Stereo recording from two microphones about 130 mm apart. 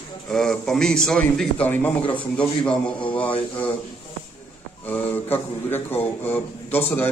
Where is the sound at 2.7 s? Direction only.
40° left (ahead or behind).